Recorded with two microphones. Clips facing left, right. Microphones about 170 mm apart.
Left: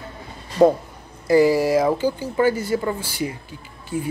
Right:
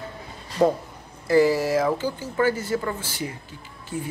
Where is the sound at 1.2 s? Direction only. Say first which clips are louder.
Left 3 dB; 15° left (ahead or behind).